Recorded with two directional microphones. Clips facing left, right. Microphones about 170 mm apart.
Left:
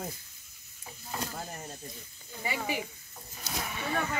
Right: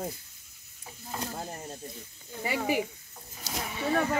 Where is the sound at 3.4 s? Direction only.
25° right (ahead or behind).